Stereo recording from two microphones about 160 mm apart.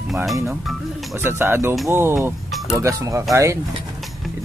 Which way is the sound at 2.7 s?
20° right (ahead or behind).